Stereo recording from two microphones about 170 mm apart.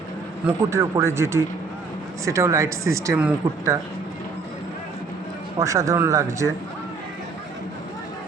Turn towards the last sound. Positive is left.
turn(degrees=-15)  # may be behind; listen again after turning